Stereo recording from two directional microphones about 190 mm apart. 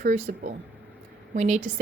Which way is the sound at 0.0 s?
45° right (ahead or behind).